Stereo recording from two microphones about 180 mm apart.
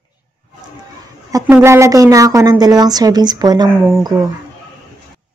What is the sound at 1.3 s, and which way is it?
A woman's voice, 15° right (ahead or behind).